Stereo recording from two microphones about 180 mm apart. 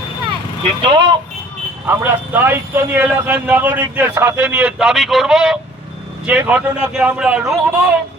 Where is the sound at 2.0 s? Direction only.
10° right (ahead or behind).